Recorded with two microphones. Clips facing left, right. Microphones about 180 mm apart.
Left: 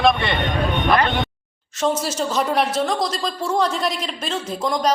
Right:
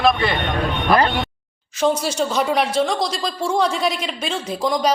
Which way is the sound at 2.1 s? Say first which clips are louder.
Right 1 dB; centre (ahead or behind).